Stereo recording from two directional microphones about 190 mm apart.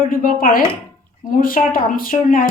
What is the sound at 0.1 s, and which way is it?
Speech, 50° left (ahead or behind).